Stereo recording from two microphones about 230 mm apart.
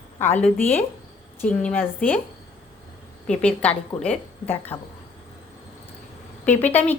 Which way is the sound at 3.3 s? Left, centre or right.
Centre.